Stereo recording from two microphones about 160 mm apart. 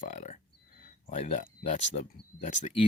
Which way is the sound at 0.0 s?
50° left (ahead or behind).